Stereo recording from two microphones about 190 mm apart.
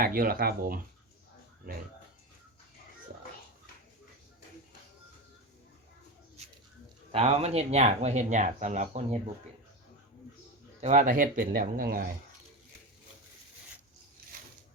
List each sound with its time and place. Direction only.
0.0 s speech: 50° right (ahead or behind)
7.1 s speech: 35° right (ahead or behind)
10.8 s speech: 40° right (ahead or behind)